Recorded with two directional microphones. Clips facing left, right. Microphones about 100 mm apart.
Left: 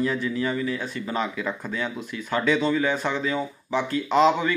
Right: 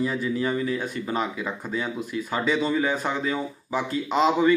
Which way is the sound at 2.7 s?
15° right (ahead or behind).